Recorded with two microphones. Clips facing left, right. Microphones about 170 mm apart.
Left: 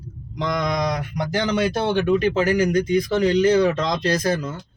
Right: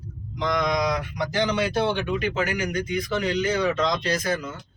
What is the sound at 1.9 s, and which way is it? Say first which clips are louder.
Speech: left 7 dB; 35° left (ahead or behind).